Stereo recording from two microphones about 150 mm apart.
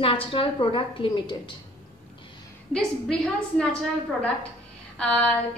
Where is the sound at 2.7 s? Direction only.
5° left (ahead or behind).